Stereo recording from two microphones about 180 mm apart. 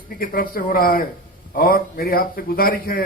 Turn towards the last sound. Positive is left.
turn(degrees=55)  # may be behind; listen again after turning